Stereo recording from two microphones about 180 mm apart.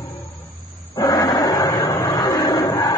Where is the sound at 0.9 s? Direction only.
20° left (ahead or behind).